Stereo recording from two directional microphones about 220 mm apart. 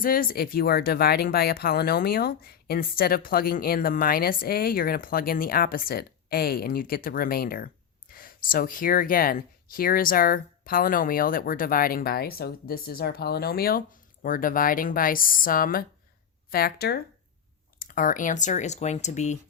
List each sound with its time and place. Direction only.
0.0 s speech: 40° left (ahead or behind)